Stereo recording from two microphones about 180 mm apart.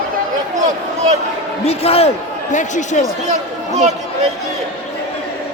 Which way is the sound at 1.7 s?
35° left (ahead or behind).